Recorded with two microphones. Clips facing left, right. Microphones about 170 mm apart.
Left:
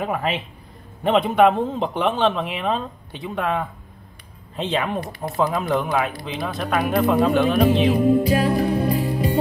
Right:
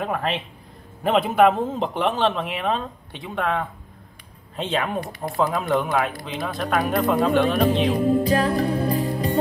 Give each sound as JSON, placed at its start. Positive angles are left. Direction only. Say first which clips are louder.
{"t": 0.0, "sound": "a man's voice", "louder": "left 1 dB", "side_deg": 5}
{"t": 8.5, "sound": "music", "louder": "left 1 dB", "side_deg": -35}